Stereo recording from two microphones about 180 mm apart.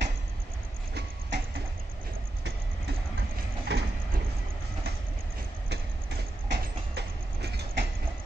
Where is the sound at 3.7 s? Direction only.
70° right (ahead or behind).